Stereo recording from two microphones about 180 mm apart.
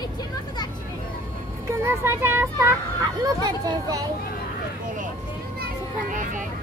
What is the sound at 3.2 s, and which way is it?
Speech, 20° right (ahead or behind).